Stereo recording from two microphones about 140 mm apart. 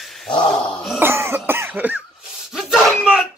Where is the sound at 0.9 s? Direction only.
15° right (ahead or behind).